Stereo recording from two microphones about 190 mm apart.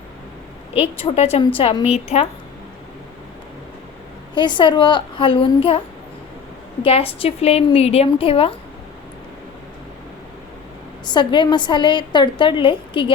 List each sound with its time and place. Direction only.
0.8 s a woman's voice: 30° left (ahead or behind)
4.4 s a woman's voice: 25° left (ahead or behind)
6.8 s a woman's voice: 30° left (ahead or behind)
11.0 s a woman's voice: 25° left (ahead or behind)